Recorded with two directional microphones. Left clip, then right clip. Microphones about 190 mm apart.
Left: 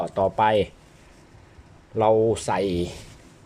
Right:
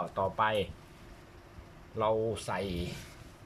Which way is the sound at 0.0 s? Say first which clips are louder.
Left 9 dB; 25° left (ahead or behind).